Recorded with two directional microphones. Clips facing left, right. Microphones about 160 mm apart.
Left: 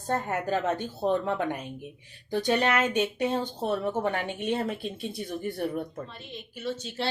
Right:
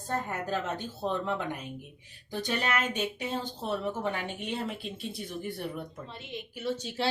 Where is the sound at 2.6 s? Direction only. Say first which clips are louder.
Left 2 dB; 65° left (ahead or behind).